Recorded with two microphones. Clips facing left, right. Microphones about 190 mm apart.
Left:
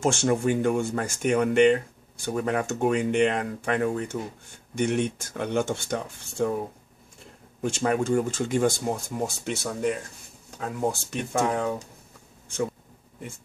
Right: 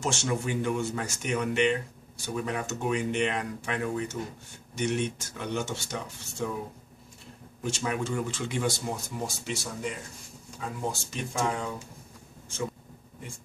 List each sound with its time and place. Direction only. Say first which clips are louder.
0.0 s speech: left 7 dB; 50° left (ahead or behind)
7.6 s speech: left 6 dB; 50° left (ahead or behind)